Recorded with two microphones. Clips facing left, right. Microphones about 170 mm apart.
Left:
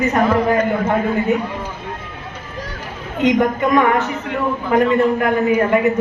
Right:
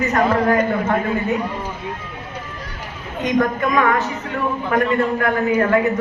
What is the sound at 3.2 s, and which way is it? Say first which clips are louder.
A man's voice: left 3 dB; 20° left (ahead or behind).